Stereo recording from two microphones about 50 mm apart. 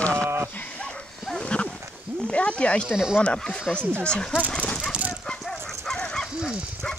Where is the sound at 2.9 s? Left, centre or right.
Centre.